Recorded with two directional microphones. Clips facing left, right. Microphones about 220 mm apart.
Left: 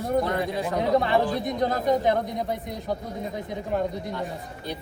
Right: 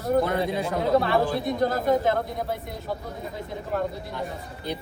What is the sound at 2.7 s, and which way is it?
Speech, 20° left (ahead or behind).